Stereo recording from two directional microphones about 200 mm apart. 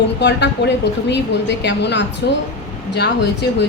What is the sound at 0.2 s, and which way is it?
A woman's voice, 60° left (ahead or behind).